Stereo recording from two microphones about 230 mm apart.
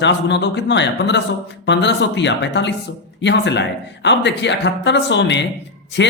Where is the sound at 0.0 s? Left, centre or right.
Left.